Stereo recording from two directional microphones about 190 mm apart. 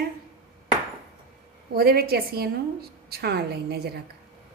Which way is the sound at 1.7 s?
55° right (ahead or behind).